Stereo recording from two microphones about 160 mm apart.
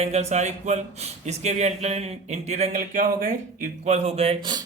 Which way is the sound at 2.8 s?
60° right (ahead or behind).